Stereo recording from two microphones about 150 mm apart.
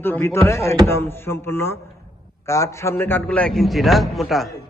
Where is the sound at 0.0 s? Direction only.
15° left (ahead or behind).